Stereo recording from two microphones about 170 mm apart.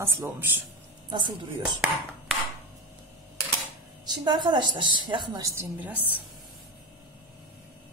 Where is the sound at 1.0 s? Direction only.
30° right (ahead or behind).